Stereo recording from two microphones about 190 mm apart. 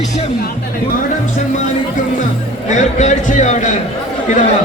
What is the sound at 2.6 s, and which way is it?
A man's voice, 40° left (ahead or behind).